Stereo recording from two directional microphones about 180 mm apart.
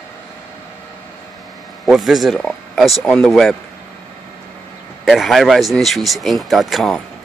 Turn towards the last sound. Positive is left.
turn(degrees=0)  # may be behind; listen again after turning